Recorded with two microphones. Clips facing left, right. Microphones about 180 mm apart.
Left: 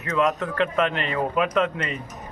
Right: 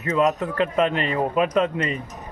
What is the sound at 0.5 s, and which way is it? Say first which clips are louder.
Speech: right 2 dB; 35° right (ahead or behind).